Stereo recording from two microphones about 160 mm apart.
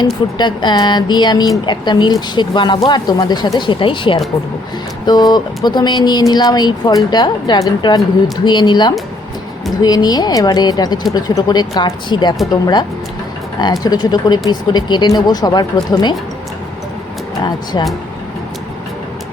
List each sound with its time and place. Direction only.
0.0 s speech: 25° left (ahead or behind)
13.6 s speech: 25° left (ahead or behind)
17.4 s speech: 25° left (ahead or behind)